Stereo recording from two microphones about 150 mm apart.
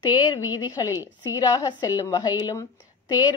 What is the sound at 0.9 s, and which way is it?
Speech, 15° right (ahead or behind).